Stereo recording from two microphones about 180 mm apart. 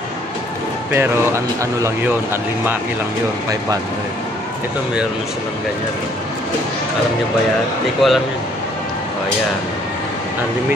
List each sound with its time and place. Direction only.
0.9 s speech: 15° right (ahead or behind)
8.0 s a man's voice: centre (ahead or behind)